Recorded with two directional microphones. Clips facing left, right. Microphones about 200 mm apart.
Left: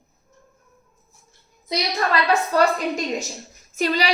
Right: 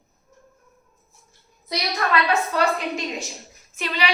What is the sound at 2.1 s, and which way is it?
A woman's voice, 40° left (ahead or behind).